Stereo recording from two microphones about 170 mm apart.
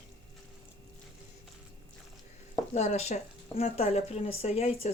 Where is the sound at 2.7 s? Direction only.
40° left (ahead or behind).